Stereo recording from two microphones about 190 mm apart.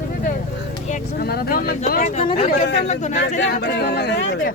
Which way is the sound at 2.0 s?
35° left (ahead or behind).